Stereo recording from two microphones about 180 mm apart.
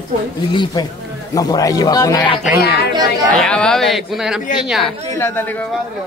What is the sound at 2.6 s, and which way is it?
Speech, 65° left (ahead or behind).